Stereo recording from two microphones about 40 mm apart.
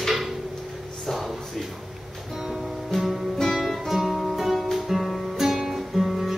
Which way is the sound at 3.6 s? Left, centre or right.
Centre.